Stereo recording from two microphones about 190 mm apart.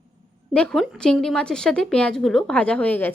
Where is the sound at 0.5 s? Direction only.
5° left (ahead or behind).